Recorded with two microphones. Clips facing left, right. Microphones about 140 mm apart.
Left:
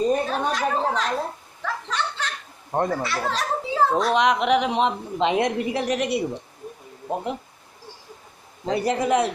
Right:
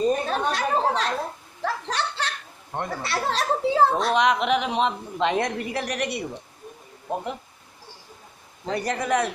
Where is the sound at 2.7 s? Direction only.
40° left (ahead or behind).